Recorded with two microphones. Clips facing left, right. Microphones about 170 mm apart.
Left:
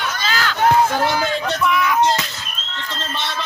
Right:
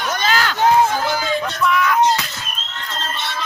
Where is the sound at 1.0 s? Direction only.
55° left (ahead or behind).